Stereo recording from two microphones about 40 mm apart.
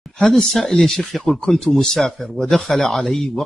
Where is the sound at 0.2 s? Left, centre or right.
Centre.